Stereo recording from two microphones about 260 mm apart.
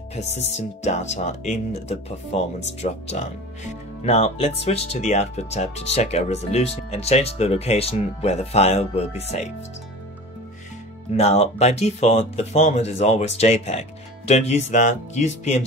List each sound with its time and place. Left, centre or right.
0.1 s speech: left
11.1 s speech: left